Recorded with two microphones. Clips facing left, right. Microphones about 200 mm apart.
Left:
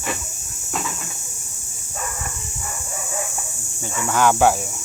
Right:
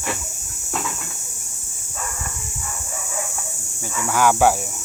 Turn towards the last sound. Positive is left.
turn(degrees=-10)  # may be behind; listen again after turning